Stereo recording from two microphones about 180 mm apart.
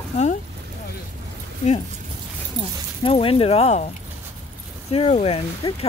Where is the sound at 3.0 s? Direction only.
30° left (ahead or behind).